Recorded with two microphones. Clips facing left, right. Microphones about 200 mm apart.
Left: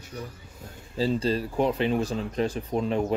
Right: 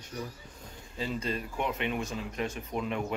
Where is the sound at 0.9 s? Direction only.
30° left (ahead or behind).